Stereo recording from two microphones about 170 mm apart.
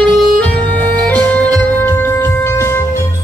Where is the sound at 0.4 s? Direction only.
10° left (ahead or behind).